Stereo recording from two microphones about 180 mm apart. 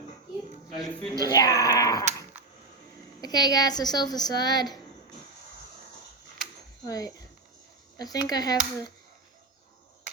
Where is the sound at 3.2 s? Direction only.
20° left (ahead or behind).